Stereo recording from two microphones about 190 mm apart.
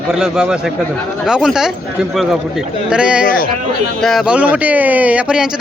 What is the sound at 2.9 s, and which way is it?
A man's voice, 5° right (ahead or behind).